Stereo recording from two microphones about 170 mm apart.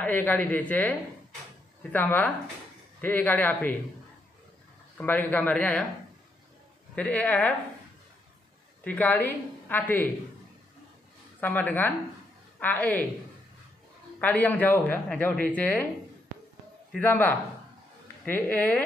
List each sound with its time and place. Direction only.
0.0 s speech: 10° left (ahead or behind)
4.9 s speech: 10° left (ahead or behind)
7.0 s speech: 10° left (ahead or behind)
8.8 s speech: 10° left (ahead or behind)
11.4 s speech: 10° left (ahead or behind)
14.2 s speech: 10° left (ahead or behind)
16.9 s speech: 10° left (ahead or behind)